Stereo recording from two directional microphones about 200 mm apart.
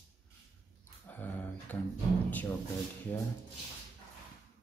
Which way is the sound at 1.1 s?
10° left (ahead or behind).